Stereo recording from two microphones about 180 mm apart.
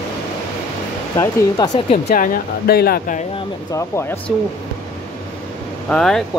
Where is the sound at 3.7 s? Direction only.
15° left (ahead or behind).